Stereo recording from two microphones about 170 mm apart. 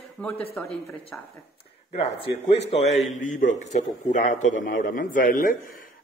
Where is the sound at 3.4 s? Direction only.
45° left (ahead or behind).